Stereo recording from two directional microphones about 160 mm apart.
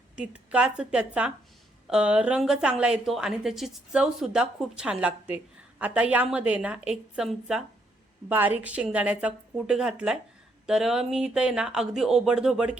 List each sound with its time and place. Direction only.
0.2 s a woman's voice: 5° right (ahead or behind)